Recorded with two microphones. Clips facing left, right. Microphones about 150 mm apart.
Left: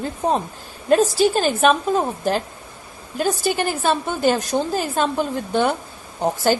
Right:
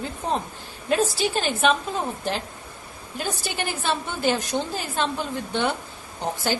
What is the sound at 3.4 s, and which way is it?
A woman's voice, 45° left (ahead or behind).